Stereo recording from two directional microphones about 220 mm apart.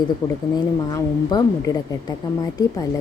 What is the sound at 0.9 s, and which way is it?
A woman's voice, 20° left (ahead or behind).